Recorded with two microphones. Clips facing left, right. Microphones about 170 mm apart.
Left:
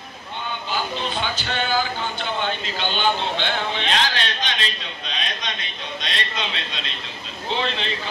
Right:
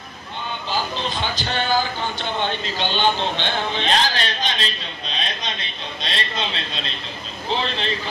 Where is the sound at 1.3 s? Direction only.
40° right (ahead or behind).